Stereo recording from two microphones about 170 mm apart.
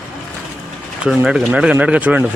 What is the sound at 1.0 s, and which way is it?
Speech, 5° right (ahead or behind).